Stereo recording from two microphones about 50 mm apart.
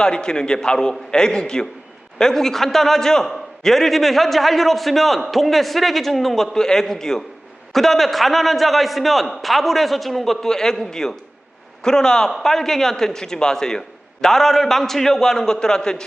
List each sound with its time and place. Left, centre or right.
0.0 s a man's voice: centre